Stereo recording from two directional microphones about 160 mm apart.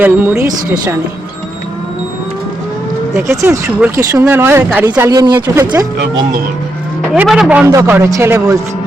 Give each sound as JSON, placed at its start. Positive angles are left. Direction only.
{"t": 0.0, "sound": "speech", "side_deg": -15}
{"t": 3.1, "sound": "speech", "side_deg": -15}
{"t": 7.1, "sound": "a man's voice", "side_deg": -5}
{"t": 7.6, "sound": "speech", "side_deg": -15}